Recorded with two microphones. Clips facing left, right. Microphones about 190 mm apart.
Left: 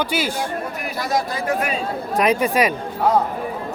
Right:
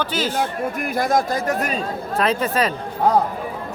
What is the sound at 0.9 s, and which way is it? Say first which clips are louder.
Speech: right 3 dB; 50° right (ahead or behind).